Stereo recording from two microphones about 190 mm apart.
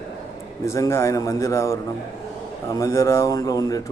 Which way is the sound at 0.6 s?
15° left (ahead or behind).